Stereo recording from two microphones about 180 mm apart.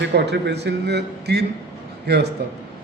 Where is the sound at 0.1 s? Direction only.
70° right (ahead or behind).